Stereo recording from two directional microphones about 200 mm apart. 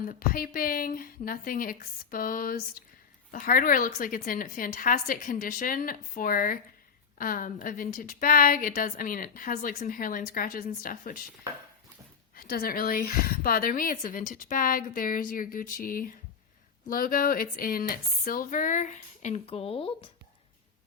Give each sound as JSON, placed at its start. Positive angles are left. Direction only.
{"t": 0.0, "sound": "a woman's voice", "side_deg": 45}
{"t": 12.3, "sound": "a woman's voice", "side_deg": 45}